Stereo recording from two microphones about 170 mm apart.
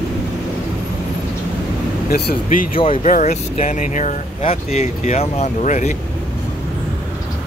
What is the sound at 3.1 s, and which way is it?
Speech, 45° left (ahead or behind).